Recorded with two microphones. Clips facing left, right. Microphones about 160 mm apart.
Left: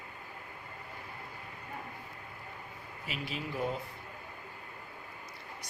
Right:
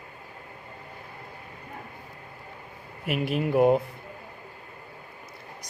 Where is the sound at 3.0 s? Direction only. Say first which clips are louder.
Right 13 dB; 60° right (ahead or behind).